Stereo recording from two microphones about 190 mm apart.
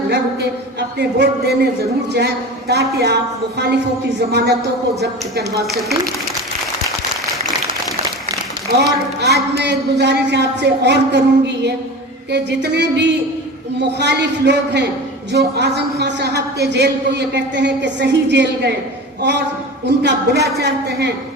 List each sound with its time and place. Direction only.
0.1 s a woman's voice: 60° right (ahead or behind)
4.3 s a woman's voice: 60° right (ahead or behind)
8.7 s a woman's voice: 60° right (ahead or behind)
20.0 s a woman's voice: 60° right (ahead or behind)